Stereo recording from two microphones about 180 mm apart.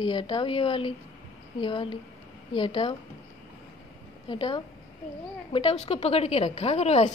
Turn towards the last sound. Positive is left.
turn(degrees=35)  # may be behind; listen again after turning